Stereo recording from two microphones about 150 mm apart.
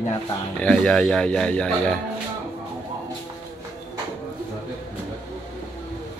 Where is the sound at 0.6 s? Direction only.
5° left (ahead or behind).